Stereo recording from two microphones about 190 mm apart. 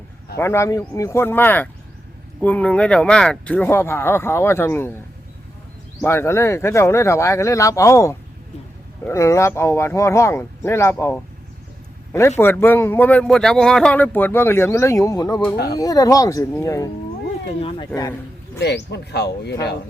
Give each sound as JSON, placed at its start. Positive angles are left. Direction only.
{"t": 0.3, "sound": "speech", "side_deg": 15}
{"t": 6.0, "sound": "speech", "side_deg": 10}
{"t": 12.4, "sound": "speech", "side_deg": 10}
{"t": 15.5, "sound": "speech", "side_deg": 55}
{"t": 15.8, "sound": "speech", "side_deg": 20}
{"t": 17.6, "sound": "speech", "side_deg": 30}
{"t": 18.6, "sound": "speech", "side_deg": 65}